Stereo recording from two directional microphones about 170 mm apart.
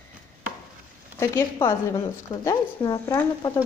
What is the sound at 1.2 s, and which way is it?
A woman's voice, 15° left (ahead or behind).